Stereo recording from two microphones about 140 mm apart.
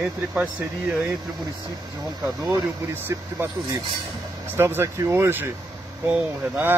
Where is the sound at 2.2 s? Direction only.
25° right (ahead or behind).